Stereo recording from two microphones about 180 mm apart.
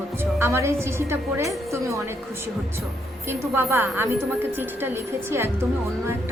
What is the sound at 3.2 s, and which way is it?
A woman's voice, 15° right (ahead or behind).